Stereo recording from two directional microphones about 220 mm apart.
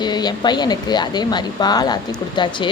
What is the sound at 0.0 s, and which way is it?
A woman's voice, 20° left (ahead or behind).